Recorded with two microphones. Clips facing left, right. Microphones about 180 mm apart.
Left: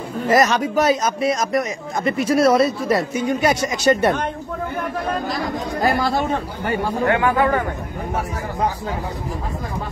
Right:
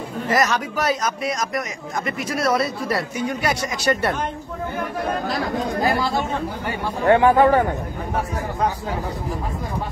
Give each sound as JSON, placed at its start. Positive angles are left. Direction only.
{"t": 0.3, "sound": "speech", "side_deg": 25}
{"t": 7.1, "sound": "speech", "side_deg": -35}